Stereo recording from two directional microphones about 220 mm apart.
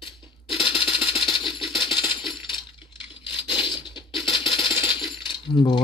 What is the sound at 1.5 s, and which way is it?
Coin, 20° left (ahead or behind).